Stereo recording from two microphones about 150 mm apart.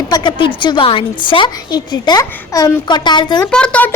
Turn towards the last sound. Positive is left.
turn(degrees=10)  # may be behind; listen again after turning